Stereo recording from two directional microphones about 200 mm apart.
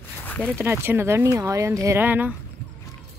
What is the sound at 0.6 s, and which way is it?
Speech, 10° right (ahead or behind).